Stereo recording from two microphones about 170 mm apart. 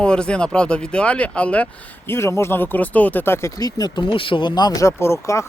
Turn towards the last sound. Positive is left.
turn(degrees=15)  # may be behind; listen again after turning